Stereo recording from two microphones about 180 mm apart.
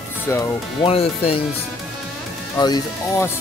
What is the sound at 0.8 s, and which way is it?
Speech, 30° left (ahead or behind).